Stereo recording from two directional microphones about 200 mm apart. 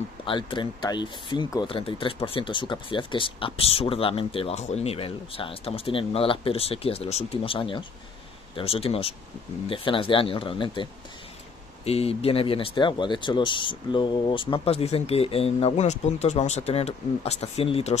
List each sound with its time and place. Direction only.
0.2 s speech: 25° left (ahead or behind)